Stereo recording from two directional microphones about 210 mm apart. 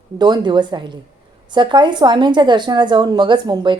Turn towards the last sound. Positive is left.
turn(degrees=-20)  # may be behind; listen again after turning